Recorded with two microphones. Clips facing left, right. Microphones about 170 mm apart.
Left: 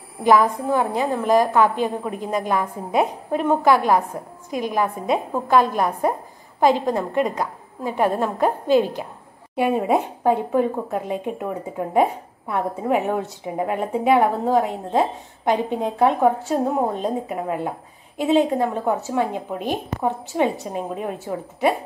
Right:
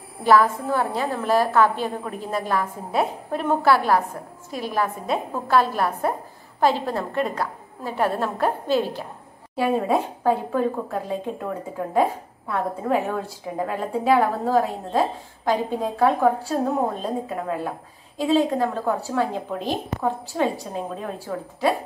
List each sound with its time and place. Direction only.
0.2 s a woman's voice: 15° left (ahead or behind)
5.1 s a woman's voice: 15° left (ahead or behind)
9.6 s speech: 20° left (ahead or behind)